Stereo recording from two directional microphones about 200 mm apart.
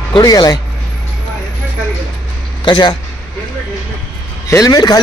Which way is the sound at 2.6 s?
20° left (ahead or behind).